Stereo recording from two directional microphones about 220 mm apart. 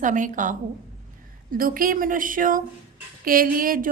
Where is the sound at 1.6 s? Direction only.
40° right (ahead or behind).